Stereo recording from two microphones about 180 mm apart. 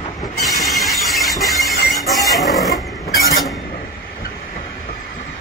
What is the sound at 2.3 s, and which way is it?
Vehicle, centre (ahead or behind).